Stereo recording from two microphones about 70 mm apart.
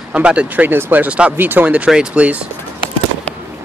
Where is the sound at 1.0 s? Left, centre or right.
Centre.